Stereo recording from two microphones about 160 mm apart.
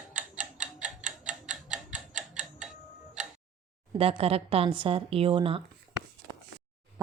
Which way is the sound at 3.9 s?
35° right (ahead or behind).